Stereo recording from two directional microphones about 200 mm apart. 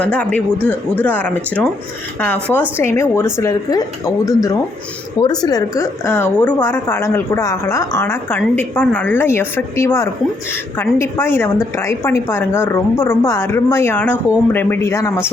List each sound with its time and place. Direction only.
0.0 s speech: 5° left (ahead or behind)